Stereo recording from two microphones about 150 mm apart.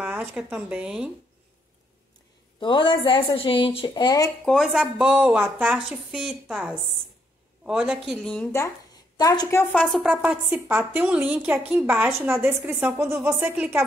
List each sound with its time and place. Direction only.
0.0 s speech: 15° right (ahead or behind)
2.6 s speech: 30° left (ahead or behind)
4.5 s a woman's voice: centre (ahead or behind)
8.5 s a woman's voice: 20° left (ahead or behind)
9.6 s speech: 10° left (ahead or behind)
10.0 s a woman's voice: 10° right (ahead or behind)